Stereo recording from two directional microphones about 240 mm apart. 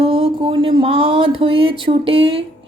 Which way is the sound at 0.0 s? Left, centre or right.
Right.